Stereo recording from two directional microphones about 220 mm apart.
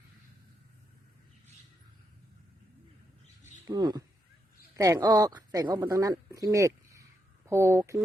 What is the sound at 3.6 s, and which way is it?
Speech, 20° right (ahead or behind).